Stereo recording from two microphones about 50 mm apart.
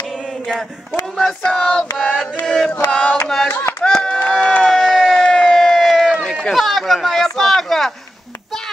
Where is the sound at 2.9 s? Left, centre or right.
Centre.